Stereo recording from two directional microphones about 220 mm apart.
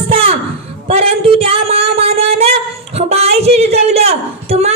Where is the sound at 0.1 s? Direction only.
25° right (ahead or behind).